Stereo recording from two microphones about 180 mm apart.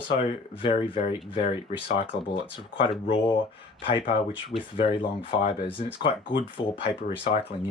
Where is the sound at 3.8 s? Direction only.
30° left (ahead or behind).